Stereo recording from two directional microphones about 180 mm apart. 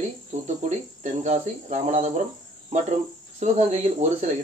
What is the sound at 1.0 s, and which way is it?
Speech, 40° right (ahead or behind).